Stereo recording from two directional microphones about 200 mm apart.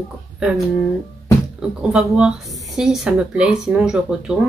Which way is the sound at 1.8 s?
5° right (ahead or behind).